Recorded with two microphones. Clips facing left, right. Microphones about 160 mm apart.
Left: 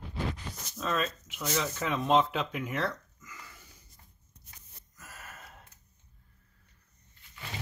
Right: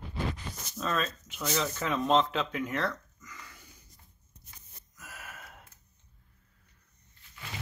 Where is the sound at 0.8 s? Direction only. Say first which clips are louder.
Even; 5° left (ahead or behind).